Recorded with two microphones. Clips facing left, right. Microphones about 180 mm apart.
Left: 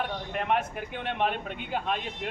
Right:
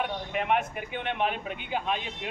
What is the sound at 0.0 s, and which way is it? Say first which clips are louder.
Speech: right 1 dB; 5° right (ahead or behind).